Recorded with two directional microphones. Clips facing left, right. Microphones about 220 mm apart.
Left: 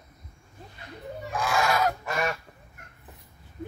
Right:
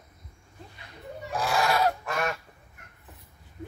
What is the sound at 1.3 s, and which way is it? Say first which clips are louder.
Fowl: even; 35° right (ahead or behind).